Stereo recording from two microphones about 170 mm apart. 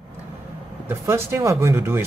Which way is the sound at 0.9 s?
15° right (ahead or behind).